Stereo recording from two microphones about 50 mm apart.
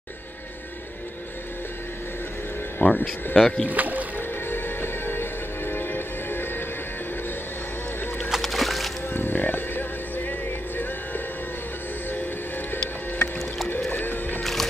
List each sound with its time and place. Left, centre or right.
2.8 s speech: left
3.3 s speech: centre
3.6 s speech: right
4.5 s music: left
8.3 s music: centre
9.1 s music: left
13.7 s music: left
14.0 s music: left
14.4 s music: centre